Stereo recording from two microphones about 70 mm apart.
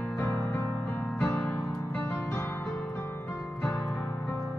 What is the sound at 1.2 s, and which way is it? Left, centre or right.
Music, centre.